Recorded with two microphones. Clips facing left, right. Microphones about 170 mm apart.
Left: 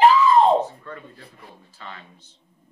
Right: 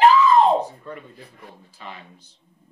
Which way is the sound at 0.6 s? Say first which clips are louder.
Left 1 dB; 15° right (ahead or behind).